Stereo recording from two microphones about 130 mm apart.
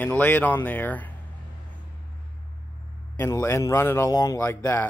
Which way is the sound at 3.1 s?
20° left (ahead or behind).